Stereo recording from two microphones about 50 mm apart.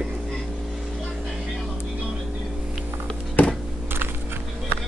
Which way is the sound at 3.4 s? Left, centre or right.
Left.